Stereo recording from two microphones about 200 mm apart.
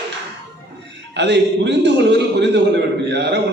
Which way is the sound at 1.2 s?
60° right (ahead or behind).